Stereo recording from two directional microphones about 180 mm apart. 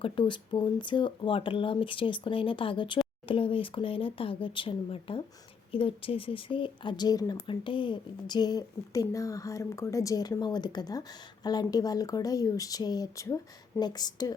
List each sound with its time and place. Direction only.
0.0 s speech: 25° left (ahead or behind)